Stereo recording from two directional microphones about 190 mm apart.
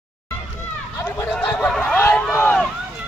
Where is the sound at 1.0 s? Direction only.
10° left (ahead or behind).